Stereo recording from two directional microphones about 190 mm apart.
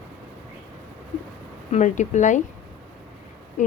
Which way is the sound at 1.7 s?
40° left (ahead or behind).